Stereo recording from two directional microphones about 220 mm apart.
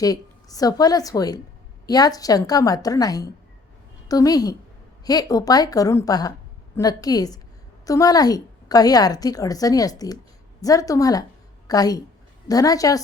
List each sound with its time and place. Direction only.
0.0 s a woman's voice: 15° left (ahead or behind)